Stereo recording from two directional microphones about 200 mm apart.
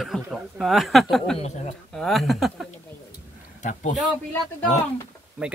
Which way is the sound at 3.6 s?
40° left (ahead or behind).